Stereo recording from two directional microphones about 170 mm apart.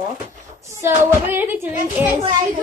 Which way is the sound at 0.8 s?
10° right (ahead or behind).